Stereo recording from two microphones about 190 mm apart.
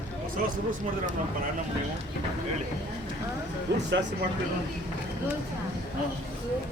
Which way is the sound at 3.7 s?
65° right (ahead or behind).